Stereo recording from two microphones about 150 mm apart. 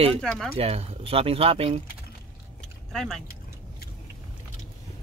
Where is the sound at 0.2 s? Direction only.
5° left (ahead or behind).